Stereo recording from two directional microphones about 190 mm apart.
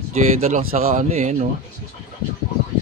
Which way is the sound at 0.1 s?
35° right (ahead or behind).